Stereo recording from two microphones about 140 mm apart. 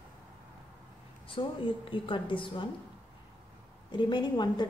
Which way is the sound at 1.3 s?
35° left (ahead or behind).